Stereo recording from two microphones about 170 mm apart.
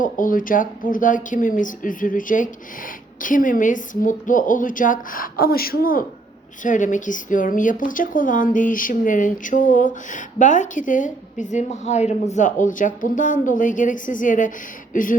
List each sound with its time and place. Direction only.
0.0 s speech: 50° left (ahead or behind)